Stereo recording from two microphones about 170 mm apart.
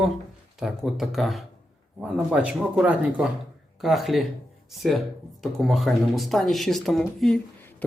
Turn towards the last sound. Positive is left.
turn(degrees=0)  # may be behind; listen again after turning